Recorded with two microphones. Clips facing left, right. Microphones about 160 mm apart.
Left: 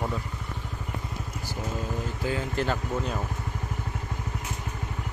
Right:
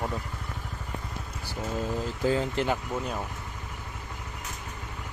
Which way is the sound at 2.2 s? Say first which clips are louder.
Right 3 dB; 30° right (ahead or behind).